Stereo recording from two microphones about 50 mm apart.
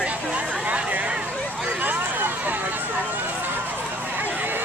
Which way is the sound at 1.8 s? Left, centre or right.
Right.